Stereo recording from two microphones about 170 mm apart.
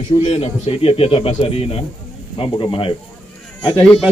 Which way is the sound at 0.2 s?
45° left (ahead or behind).